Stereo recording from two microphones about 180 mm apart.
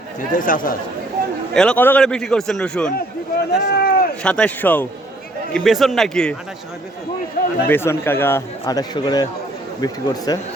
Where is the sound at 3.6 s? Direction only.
55° left (ahead or behind).